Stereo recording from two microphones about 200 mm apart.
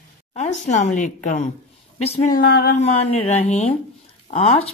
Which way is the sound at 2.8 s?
30° left (ahead or behind).